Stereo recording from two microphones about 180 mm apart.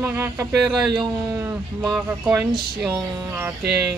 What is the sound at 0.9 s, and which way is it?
Speech, 20° right (ahead or behind).